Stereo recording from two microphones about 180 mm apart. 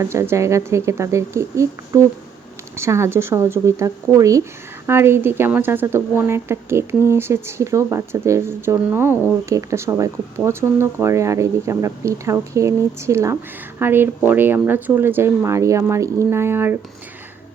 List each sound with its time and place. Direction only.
0.0 s speech: 15° right (ahead or behind)